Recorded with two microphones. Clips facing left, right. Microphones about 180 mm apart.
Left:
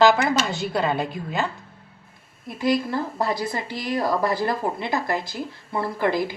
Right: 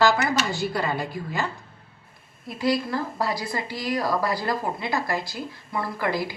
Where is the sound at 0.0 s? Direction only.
20° left (ahead or behind).